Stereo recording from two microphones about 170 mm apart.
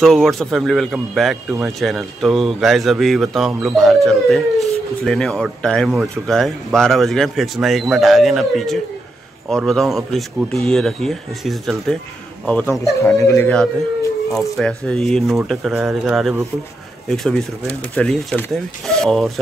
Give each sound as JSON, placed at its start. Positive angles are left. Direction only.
{"t": 0.0, "sound": "speech", "side_deg": 0}
{"t": 12.8, "sound": "speech", "side_deg": 20}
{"t": 14.3, "sound": "speech", "side_deg": 0}